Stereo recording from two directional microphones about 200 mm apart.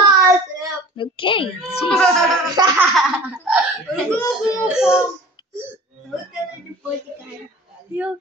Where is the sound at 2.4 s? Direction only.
20° right (ahead or behind).